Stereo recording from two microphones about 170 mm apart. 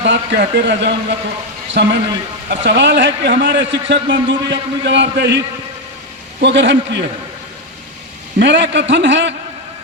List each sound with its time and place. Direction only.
0.0 s a man's voice: 90° right
6.4 s a man's voice: 90° right
8.4 s a man's voice: 90° right